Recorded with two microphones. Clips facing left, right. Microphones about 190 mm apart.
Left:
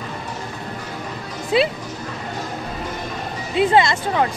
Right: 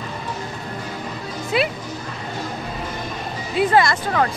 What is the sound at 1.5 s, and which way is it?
Speech, 25° left (ahead or behind).